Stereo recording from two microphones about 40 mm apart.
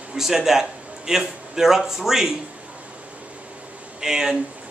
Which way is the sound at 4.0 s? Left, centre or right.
Centre.